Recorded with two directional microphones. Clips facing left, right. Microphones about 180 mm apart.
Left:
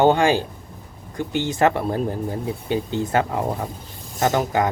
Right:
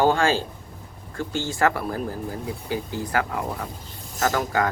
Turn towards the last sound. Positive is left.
turn(degrees=20)  # may be behind; listen again after turning